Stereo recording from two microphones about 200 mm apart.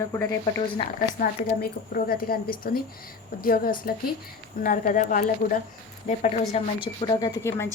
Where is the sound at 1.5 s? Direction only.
45° left (ahead or behind).